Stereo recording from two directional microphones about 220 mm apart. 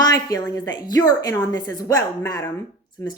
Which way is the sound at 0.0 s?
15° left (ahead or behind).